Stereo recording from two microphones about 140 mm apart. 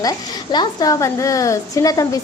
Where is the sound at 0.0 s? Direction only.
30° left (ahead or behind).